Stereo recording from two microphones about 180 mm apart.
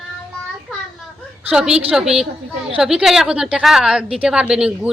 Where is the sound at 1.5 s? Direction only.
5° right (ahead or behind).